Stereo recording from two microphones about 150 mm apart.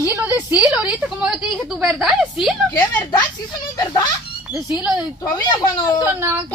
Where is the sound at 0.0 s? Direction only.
15° right (ahead or behind).